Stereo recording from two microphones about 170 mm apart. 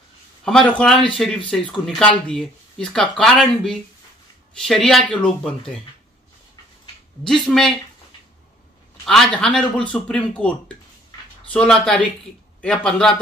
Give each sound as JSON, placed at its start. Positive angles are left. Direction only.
{"t": 0.5, "sound": "speech", "side_deg": 5}
{"t": 7.2, "sound": "speech", "side_deg": 0}
{"t": 9.0, "sound": "speech", "side_deg": 0}
{"t": 11.5, "sound": "speech", "side_deg": 5}